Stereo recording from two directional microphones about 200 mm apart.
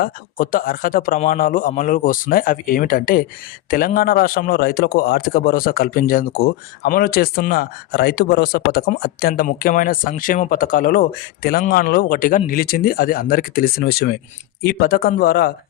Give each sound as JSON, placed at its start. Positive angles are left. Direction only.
{"t": 0.0, "sound": "speech", "side_deg": 45}